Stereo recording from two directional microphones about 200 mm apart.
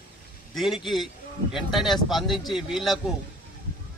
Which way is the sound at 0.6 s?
Centre (ahead or behind).